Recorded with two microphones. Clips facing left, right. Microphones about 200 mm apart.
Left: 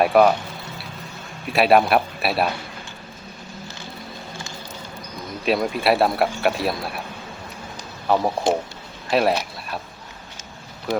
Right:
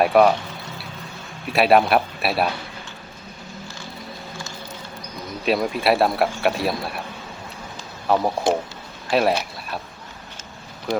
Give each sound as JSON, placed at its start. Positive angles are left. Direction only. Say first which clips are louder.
{"t": 0.0, "sound": "speech", "louder": "even", "side_deg": 0}
{"t": 1.5, "sound": "speech", "louder": "even", "side_deg": 0}
{"t": 5.5, "sound": "speech", "louder": "even", "side_deg": 0}
{"t": 8.0, "sound": "a man's voice", "louder": "even", "side_deg": 0}